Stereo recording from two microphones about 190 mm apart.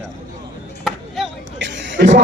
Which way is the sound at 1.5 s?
70° right (ahead or behind).